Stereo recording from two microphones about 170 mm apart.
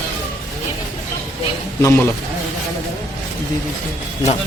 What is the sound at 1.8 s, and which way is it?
Speech, 15° left (ahead or behind).